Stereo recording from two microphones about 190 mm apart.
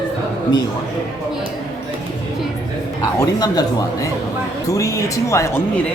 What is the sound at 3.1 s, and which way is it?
Speech, 20° left (ahead or behind).